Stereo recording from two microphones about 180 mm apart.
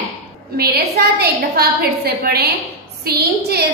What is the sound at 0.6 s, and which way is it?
A woman's voice, 60° right (ahead or behind).